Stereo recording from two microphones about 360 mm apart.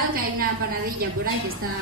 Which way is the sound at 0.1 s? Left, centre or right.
Right.